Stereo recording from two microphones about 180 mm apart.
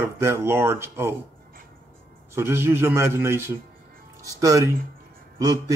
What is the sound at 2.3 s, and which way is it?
Speech, 15° right (ahead or behind).